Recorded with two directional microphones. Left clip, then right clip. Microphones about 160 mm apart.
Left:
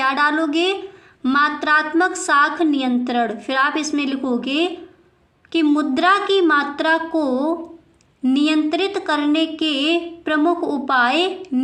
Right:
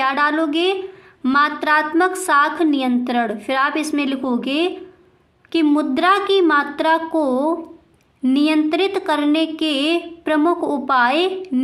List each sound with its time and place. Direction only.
0.0 s speech: 10° right (ahead or behind)